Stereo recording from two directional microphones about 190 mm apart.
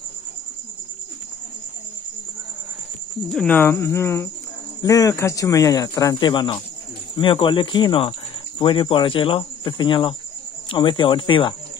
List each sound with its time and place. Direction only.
3.3 s speech: 5° left (ahead or behind); by 11.5 s 25° left (ahead or behind)